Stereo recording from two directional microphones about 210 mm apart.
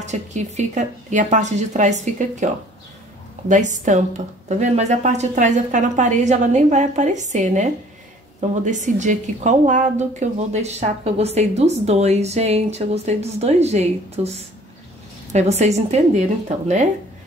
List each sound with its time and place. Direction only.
0.0 s a woman's voice: 35° right (ahead or behind)